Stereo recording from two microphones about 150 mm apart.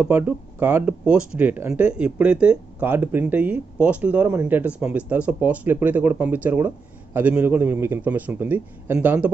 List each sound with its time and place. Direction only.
0.0 s speech: 10° right (ahead or behind)